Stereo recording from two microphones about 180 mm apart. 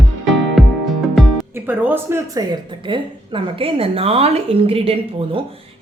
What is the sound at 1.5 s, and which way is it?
Speech, 10° right (ahead or behind).